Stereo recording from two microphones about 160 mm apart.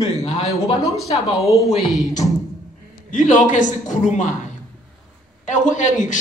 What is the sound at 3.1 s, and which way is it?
A man's voice, 50° left (ahead or behind).